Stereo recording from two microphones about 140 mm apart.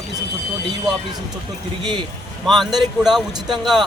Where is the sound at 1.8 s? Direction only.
35° right (ahead or behind).